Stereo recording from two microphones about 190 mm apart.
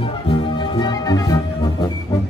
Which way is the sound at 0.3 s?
25° left (ahead or behind).